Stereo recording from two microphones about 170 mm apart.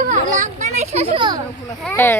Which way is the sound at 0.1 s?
45° right (ahead or behind).